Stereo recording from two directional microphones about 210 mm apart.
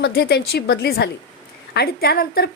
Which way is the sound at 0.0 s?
50° left (ahead or behind).